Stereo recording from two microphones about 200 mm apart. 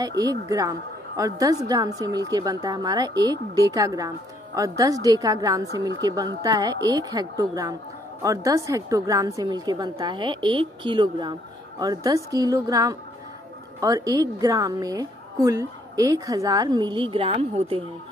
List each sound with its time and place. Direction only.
0.2 s a woman's voice: 15° right (ahead or behind)